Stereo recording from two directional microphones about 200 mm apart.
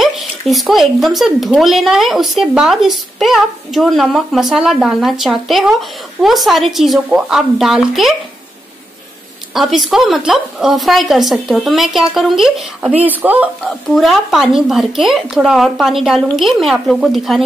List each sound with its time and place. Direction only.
0.0 s speech: centre (ahead or behind)
9.5 s speech: centre (ahead or behind)